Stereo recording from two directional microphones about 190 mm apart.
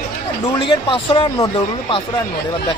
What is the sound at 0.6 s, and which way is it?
A man's voice, 25° left (ahead or behind).